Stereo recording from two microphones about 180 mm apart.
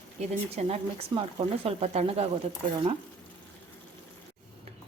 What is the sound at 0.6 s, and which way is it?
A woman's voice, 35° right (ahead or behind).